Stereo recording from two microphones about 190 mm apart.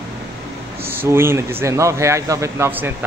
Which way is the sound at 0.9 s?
10° right (ahead or behind).